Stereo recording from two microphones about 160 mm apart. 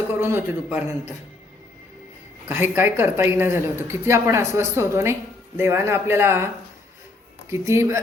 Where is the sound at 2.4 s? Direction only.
10° right (ahead or behind).